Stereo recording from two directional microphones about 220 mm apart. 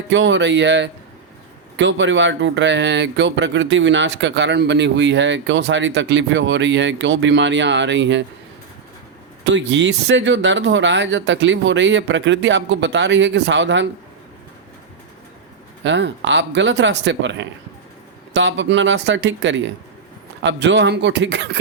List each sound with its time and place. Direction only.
0.1 s speech: 55° right (ahead or behind)
9.4 s speech: 55° right (ahead or behind)
15.8 s speech: 55° right (ahead or behind)